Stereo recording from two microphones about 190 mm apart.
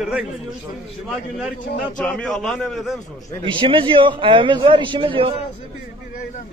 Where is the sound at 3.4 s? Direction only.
25° right (ahead or behind).